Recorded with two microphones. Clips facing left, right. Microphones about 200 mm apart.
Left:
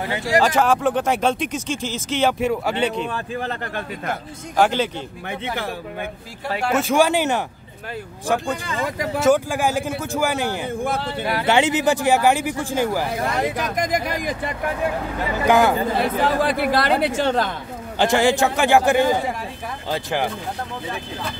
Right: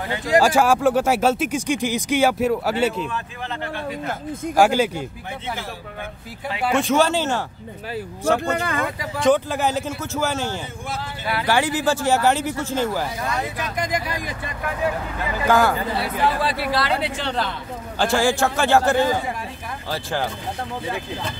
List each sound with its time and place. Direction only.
0.4 s speech: 10° right (ahead or behind)
3.1 s speech: 45° left (ahead or behind)
4.6 s speech: 10° right (ahead or behind)
6.6 s speech: 5° left (ahead or behind)
6.9 s speech: 15° left (ahead or behind)
8.5 s speech: 55° right (ahead or behind)
9.2 s speech: 10° left (ahead or behind)
10.8 s speech: 60° left (ahead or behind)
11.4 s speech: 20° left (ahead or behind)
13.0 s speech: 60° left (ahead or behind)
13.6 s speech: 45° left (ahead or behind)
15.4 s speech: 20° left (ahead or behind)
16.0 s speech: 50° left (ahead or behind)
17.9 s speech: 20° left (ahead or behind)